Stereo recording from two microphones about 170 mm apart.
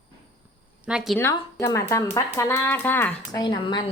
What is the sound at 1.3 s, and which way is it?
Speech, 20° left (ahead or behind).